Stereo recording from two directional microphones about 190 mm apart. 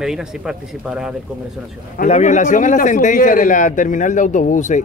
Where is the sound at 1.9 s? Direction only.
40° left (ahead or behind).